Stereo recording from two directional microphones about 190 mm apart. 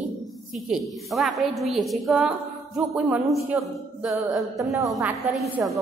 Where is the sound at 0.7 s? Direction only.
Centre (ahead or behind).